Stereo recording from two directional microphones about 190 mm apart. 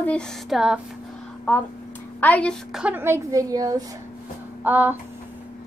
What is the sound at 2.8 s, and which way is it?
A woman's voice, 10° right (ahead or behind).